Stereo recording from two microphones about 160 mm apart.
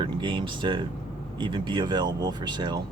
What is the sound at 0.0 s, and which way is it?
Speech, 30° right (ahead or behind).